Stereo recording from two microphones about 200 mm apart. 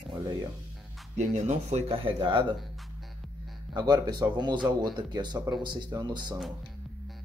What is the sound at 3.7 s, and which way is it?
Speech, 20° right (ahead or behind).